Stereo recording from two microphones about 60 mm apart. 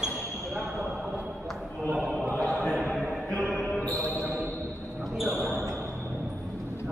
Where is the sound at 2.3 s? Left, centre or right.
Left.